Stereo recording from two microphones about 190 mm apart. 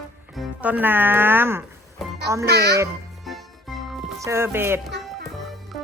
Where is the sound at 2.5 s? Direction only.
55° right (ahead or behind).